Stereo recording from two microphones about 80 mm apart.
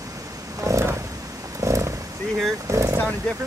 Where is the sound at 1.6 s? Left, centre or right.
Right.